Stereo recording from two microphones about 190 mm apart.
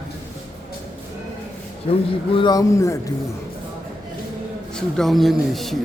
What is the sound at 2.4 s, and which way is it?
Speech, 20° left (ahead or behind).